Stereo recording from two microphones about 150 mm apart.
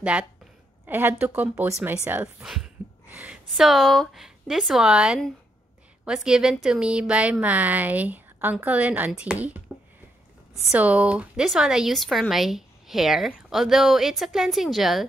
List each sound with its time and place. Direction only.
0.0 s a woman's voice: 10° right (ahead or behind)
2.4 s a woman's voice: 5° right (ahead or behind)
10.7 s speech: 10° right (ahead or behind)